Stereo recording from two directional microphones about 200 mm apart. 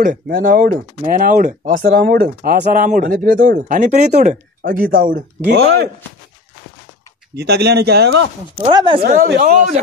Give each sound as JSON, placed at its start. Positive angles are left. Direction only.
{"t": 0.0, "sound": "speech", "side_deg": -45}
{"t": 7.3, "sound": "speech", "side_deg": -55}
{"t": 8.5, "sound": "speech", "side_deg": -25}
{"t": 9.1, "sound": "speech", "side_deg": -45}